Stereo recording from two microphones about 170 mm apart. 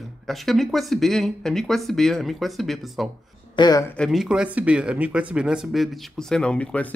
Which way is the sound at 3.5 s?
25° left (ahead or behind).